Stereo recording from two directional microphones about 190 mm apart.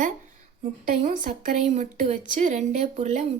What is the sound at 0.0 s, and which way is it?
A woman's voice, 40° right (ahead or behind).